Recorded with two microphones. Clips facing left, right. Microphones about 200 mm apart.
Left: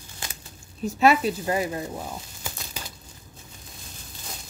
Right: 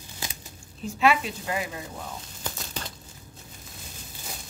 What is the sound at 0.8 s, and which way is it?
Speech, 40° left (ahead or behind).